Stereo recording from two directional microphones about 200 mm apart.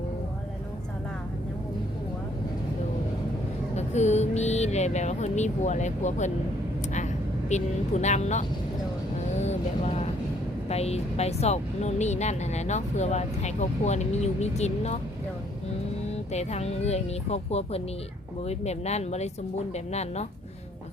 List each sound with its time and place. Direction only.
3.8 s speech: 35° left (ahead or behind)
16.3 s speech: 35° left (ahead or behind)